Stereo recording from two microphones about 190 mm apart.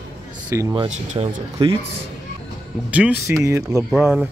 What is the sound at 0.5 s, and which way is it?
Speech, 20° right (ahead or behind).